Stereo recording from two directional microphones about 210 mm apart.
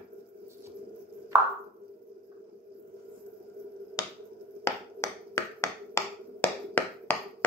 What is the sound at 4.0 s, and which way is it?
Finger snapping, 15° left (ahead or behind).